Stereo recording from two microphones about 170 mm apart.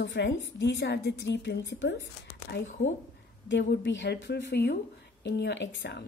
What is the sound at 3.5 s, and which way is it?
Speech, 90° left.